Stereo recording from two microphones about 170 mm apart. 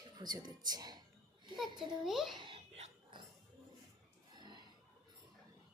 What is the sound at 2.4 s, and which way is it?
Dog, 35° right (ahead or behind).